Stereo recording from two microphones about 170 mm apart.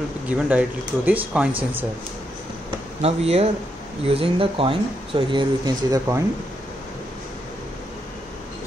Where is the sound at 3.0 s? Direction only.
35° right (ahead or behind); by 6.2 s 20° right (ahead or behind).